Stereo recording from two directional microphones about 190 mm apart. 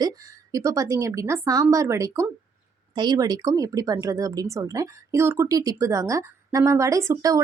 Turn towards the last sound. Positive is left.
turn(degrees=-15)  # may be behind; listen again after turning